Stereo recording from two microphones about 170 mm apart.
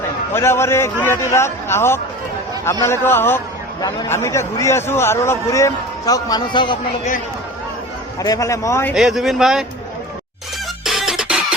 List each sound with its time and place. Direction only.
0.3 s a man's voice: 15° left (ahead or behind)
8.2 s a man's voice: 20° left (ahead or behind)
9.0 s speech: centre (ahead or behind)
10.8 s music: centre (ahead or behind)